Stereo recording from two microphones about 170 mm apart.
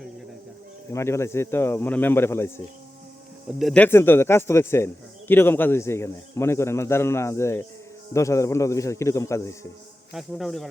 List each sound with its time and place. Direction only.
0.9 s a man's voice: 15° left (ahead or behind)
3.6 s a man's voice: centre (ahead or behind)
3.8 s a man's voice: 15° left (ahead or behind)
10.1 s a man's voice: centre (ahead or behind)